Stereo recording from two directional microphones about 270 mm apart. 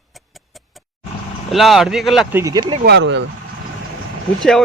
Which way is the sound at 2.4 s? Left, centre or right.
Centre.